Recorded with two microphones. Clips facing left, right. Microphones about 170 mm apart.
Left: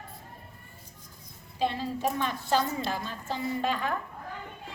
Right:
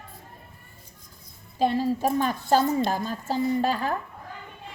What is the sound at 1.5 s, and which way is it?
A woman's voice, 45° right (ahead or behind).